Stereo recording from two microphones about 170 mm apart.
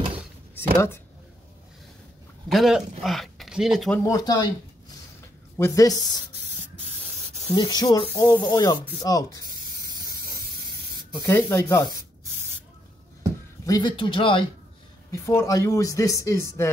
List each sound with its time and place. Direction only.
0.7 s speech: 15° left (ahead or behind)
2.4 s speech: centre (ahead or behind)
4.0 s speech: 20° left (ahead or behind)
5.6 s speech: 20° left (ahead or behind)
7.5 s speech: 25° left (ahead or behind)
11.2 s speech: 15° left (ahead or behind)
13.7 s speech: 25° left (ahead or behind)
15.0 s speech: 15° left (ahead or behind)